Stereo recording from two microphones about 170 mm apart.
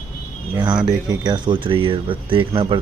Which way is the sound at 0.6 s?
25° right (ahead or behind).